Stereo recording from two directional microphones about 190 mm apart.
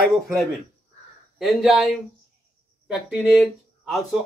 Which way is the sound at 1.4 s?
Centre (ahead or behind).